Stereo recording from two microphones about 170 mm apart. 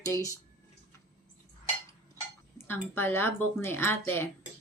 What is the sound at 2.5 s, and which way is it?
Speech, 15° left (ahead or behind).